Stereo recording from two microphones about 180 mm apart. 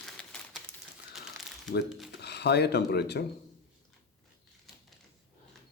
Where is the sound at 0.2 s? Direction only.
5° left (ahead or behind).